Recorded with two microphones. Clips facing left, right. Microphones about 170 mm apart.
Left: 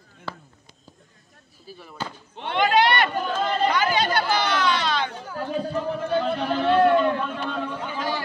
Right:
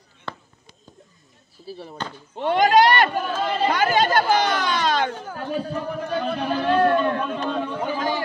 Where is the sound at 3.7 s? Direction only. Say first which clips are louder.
Right 3 dB; 50° right (ahead or behind).